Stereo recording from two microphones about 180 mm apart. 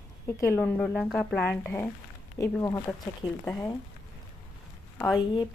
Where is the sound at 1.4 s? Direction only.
10° left (ahead or behind).